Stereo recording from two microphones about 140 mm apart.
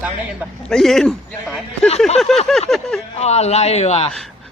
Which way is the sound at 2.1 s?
Centre (ahead or behind).